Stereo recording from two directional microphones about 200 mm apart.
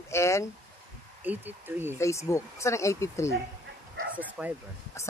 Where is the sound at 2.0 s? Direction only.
15° left (ahead or behind).